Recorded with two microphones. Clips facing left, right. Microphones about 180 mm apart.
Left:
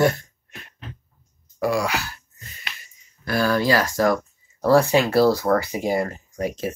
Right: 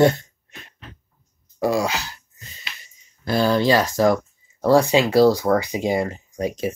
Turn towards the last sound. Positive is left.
turn(degrees=-15)  # may be behind; listen again after turning